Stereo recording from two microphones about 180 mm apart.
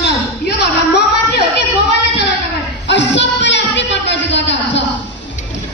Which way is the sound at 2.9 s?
80° left.